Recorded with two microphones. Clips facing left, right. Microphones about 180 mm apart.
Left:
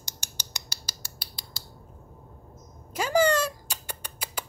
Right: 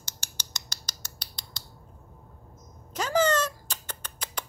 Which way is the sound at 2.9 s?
10° left (ahead or behind).